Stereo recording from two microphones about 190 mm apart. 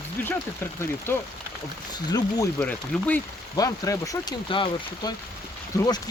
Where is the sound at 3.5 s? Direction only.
20° left (ahead or behind).